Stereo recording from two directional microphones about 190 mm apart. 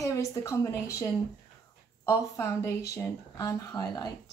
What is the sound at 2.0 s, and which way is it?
A woman's voice, 15° left (ahead or behind).